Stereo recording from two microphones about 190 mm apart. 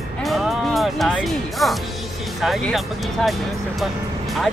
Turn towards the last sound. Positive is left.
turn(degrees=0)  # may be behind; listen again after turning